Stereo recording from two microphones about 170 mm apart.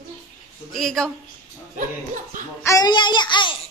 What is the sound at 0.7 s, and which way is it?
Speech, centre (ahead or behind).